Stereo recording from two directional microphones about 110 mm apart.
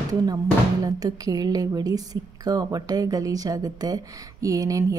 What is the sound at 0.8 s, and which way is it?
Speech, 35° right (ahead or behind).